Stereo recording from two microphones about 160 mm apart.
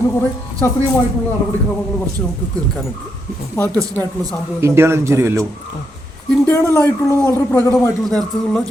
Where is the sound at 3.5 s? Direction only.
10° left (ahead or behind).